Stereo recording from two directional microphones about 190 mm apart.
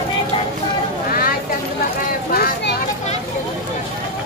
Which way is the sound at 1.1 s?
50° left (ahead or behind).